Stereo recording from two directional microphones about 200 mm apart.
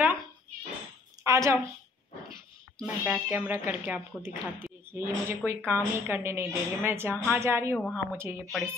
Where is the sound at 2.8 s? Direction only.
10° right (ahead or behind).